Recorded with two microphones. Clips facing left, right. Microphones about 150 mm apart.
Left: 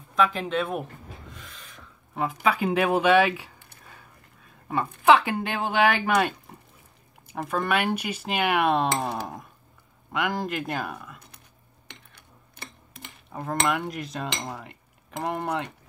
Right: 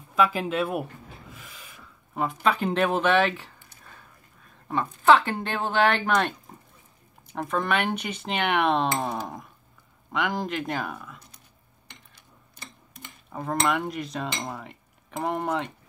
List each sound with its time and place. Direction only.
0.1 s speech: 5° right (ahead or behind)
1.3 s a sound: 10° right (ahead or behind)
2.2 s speech: 10° left (ahead or behind)
5.0 s speech: 10° left (ahead or behind)
11.9 s cutlery: 65° left (ahead or behind)
13.3 s cutlery: centre (ahead or behind)
13.7 s speech: centre (ahead or behind)